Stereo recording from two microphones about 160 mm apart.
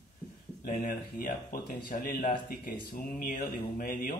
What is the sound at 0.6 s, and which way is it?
A man's voice, 60° left (ahead or behind).